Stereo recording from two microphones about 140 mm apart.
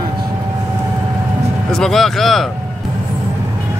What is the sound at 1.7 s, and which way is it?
Speech, 5° left (ahead or behind).